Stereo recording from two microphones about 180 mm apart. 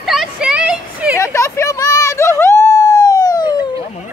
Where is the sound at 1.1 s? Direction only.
15° left (ahead or behind).